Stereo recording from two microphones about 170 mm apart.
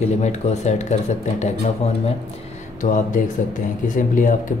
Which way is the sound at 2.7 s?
50° left (ahead or behind).